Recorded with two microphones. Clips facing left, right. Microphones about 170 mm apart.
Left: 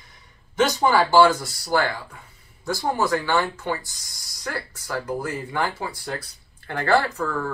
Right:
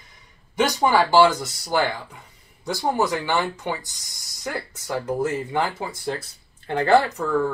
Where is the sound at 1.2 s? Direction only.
20° right (ahead or behind).